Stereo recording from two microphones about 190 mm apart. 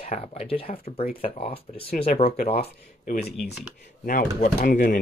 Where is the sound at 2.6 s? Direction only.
35° left (ahead or behind).